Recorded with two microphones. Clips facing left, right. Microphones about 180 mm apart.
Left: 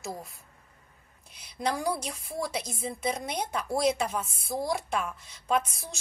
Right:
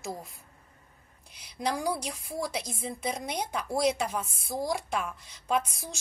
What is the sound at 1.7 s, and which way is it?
A woman's voice, 10° right (ahead or behind).